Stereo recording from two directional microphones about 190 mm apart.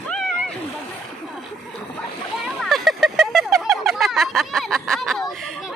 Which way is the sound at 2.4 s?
Centre (ahead or behind).